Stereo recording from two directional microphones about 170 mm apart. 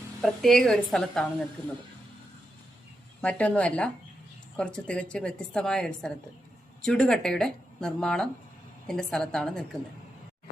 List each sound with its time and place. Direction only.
0.2 s speech: centre (ahead or behind)
3.2 s a woman's voice: 10° left (ahead or behind)